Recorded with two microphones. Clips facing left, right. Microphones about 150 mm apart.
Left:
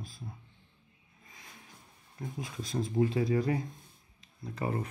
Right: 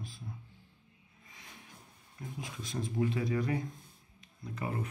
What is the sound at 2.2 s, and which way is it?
Speech, 40° left (ahead or behind).